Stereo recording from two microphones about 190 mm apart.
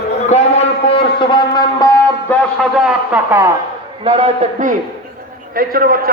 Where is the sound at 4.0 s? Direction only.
35° right (ahead or behind).